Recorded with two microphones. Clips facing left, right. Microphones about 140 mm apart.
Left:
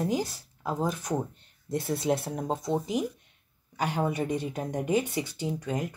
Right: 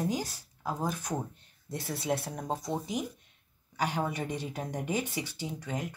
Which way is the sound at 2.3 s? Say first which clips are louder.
Left 4 dB; 25° left (ahead or behind).